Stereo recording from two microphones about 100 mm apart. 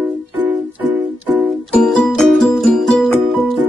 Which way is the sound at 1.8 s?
Centre (ahead or behind).